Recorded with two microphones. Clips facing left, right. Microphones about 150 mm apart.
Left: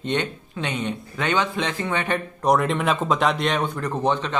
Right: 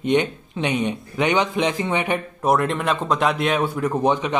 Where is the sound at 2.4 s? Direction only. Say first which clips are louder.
Even; centre (ahead or behind).